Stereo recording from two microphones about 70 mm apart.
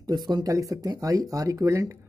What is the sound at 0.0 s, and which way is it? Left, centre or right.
Speech, right.